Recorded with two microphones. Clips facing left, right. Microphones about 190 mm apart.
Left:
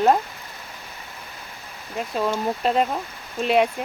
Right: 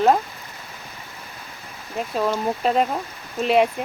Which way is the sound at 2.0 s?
Centre (ahead or behind).